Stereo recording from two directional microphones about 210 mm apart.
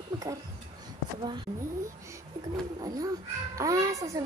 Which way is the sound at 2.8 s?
20° right (ahead or behind).